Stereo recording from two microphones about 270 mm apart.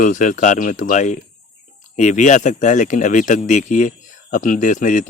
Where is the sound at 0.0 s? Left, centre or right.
Left.